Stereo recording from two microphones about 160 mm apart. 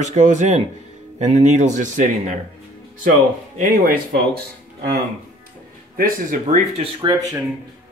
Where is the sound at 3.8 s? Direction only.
70° right (ahead or behind).